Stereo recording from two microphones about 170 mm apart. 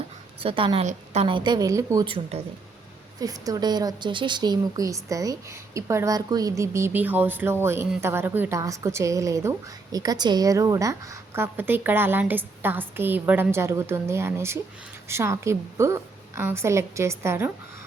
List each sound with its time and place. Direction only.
0.4 s a woman's voice: 30° right (ahead or behind)
2.0 s a woman's voice: 30° right (ahead or behind)
3.2 s a woman's voice: 20° right (ahead or behind)